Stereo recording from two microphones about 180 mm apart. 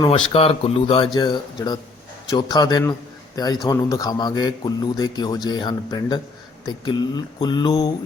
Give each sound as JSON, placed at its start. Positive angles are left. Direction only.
{"t": 0.3, "sound": "speech", "side_deg": 30}